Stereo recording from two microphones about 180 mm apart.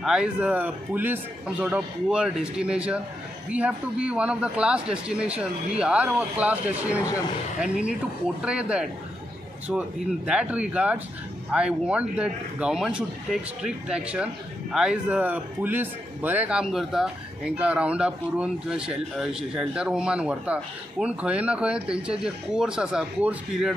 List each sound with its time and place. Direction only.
0.0 s a man's voice: 5° right (ahead or behind)